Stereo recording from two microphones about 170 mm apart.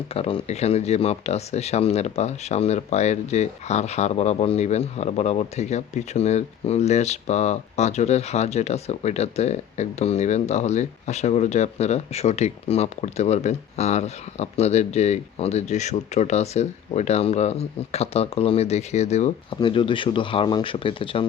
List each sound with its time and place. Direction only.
0.1 s speech: 35° left (ahead or behind)
19.5 s speech: 30° left (ahead or behind)